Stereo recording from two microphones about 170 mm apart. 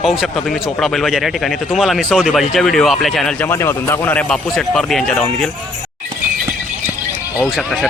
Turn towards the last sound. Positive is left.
turn(degrees=0)  # may be behind; listen again after turning